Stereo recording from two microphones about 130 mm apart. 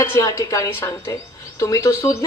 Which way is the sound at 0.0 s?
20° left (ahead or behind).